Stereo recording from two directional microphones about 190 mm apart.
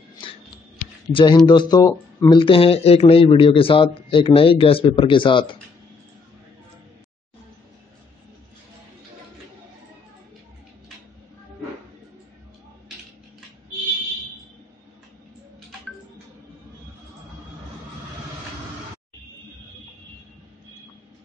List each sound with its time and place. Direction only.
1.1 s speech: 25° left (ahead or behind)